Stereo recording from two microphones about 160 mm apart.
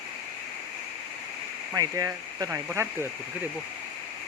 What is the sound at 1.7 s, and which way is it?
Speech, 20° right (ahead or behind).